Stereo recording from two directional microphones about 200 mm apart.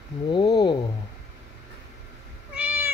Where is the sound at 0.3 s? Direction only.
20° left (ahead or behind).